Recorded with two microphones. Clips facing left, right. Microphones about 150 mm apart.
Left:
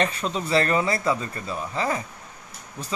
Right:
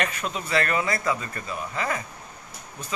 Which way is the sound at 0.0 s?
30° left (ahead or behind).